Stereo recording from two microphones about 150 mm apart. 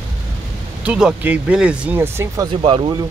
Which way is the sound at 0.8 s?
10° right (ahead or behind).